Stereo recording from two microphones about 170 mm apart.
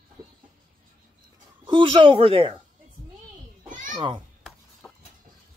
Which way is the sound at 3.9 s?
25° right (ahead or behind).